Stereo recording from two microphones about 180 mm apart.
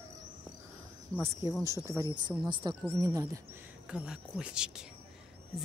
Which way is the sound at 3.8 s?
5° right (ahead or behind).